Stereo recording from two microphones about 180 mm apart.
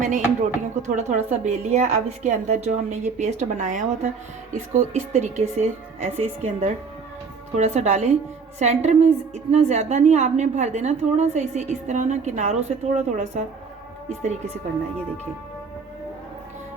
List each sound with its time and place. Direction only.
0.8 s a woman's voice: 40° right (ahead or behind)